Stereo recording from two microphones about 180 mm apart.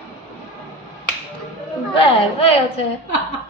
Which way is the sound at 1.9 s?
30° left (ahead or behind).